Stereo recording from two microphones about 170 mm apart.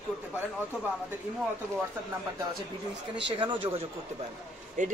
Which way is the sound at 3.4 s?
30° right (ahead or behind).